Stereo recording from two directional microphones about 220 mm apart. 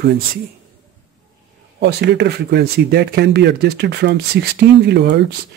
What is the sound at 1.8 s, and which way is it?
Speech, 50° right (ahead or behind).